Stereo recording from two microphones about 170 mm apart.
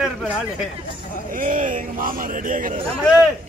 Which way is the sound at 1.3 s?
50° right (ahead or behind).